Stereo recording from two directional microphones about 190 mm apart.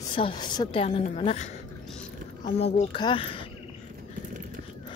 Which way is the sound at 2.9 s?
25° left (ahead or behind).